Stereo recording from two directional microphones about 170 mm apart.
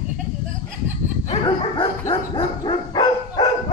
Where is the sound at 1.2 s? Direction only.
30° left (ahead or behind).